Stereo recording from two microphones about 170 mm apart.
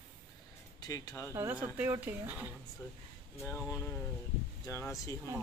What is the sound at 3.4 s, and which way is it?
Speech, 15° left (ahead or behind).